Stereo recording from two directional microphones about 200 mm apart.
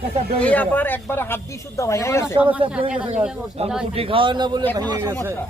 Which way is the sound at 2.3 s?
5° right (ahead or behind).